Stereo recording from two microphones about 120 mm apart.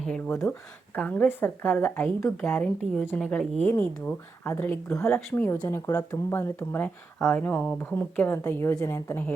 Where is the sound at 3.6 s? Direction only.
20° left (ahead or behind).